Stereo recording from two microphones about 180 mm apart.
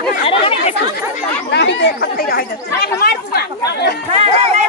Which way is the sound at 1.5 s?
70° left (ahead or behind).